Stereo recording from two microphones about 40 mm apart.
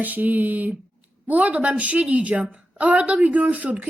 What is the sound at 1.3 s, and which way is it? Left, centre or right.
A woman's voice, right.